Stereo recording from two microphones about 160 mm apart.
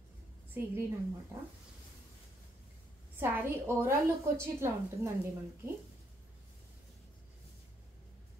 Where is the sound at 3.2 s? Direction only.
15° right (ahead or behind).